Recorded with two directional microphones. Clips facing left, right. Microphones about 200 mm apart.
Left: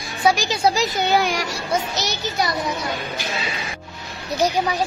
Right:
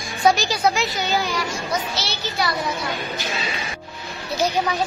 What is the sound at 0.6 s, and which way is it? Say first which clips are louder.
Speech: left 2 dB; 35° left (ahead or behind).